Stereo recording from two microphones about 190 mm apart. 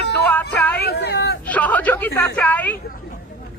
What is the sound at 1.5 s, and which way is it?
Speech, 10° left (ahead or behind).